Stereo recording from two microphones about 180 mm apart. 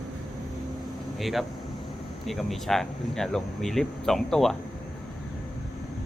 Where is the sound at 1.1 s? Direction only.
Centre (ahead or behind).